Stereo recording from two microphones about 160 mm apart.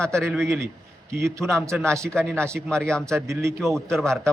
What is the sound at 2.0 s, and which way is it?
A man's voice, 5° left (ahead or behind).